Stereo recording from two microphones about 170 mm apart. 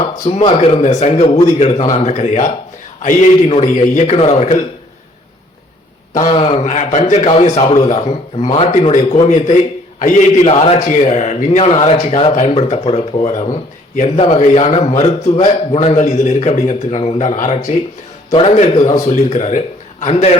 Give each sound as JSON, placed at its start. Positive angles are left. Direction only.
{"t": 0.3, "sound": "a man's voice", "side_deg": 35}
{"t": 6.3, "sound": "a man's voice", "side_deg": 35}
{"t": 10.5, "sound": "a man's voice", "side_deg": 35}